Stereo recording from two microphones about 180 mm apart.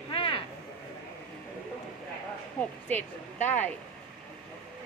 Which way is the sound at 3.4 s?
10° left (ahead or behind).